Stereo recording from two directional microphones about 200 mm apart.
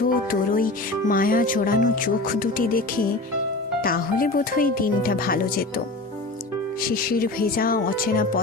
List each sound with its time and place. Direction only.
0.0 s speech: 45° left (ahead or behind)
6.9 s speech: 45° left (ahead or behind)